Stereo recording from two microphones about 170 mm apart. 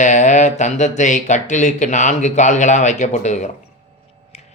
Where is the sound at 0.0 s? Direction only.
45° left (ahead or behind).